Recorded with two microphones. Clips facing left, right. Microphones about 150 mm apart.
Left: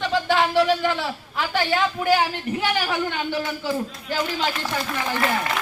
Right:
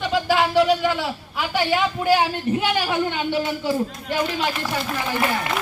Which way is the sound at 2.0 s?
15° right (ahead or behind).